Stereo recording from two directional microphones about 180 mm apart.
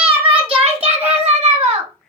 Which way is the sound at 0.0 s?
30° right (ahead or behind).